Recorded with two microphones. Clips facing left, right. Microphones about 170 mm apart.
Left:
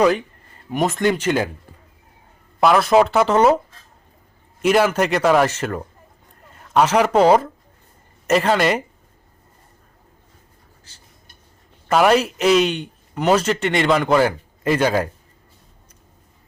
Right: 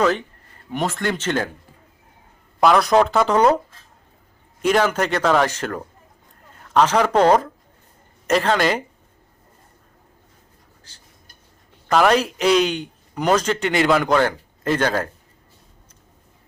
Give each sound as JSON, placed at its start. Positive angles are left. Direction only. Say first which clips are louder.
{"t": 0.7, "sound": "speech", "louder": "left 4 dB", "side_deg": 20}
{"t": 2.6, "sound": "a man's voice", "louder": "left 1 dB", "side_deg": 0}
{"t": 4.6, "sound": "a man's voice", "louder": "left 2 dB", "side_deg": 5}
{"t": 11.9, "sound": "a man's voice", "louder": "left 1 dB", "side_deg": 5}